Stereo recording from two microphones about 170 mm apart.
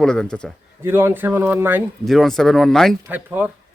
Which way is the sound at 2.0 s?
Centre (ahead or behind).